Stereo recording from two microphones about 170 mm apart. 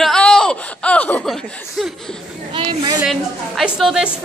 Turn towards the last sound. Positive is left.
turn(degrees=0)  # may be behind; listen again after turning